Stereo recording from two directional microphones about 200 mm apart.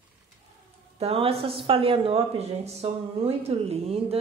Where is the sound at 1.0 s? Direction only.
30° right (ahead or behind).